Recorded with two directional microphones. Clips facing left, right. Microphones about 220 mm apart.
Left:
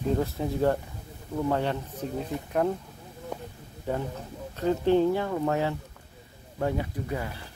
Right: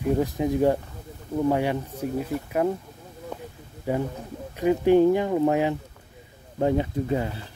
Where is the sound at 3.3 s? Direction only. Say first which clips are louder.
Even; 10° left (ahead or behind).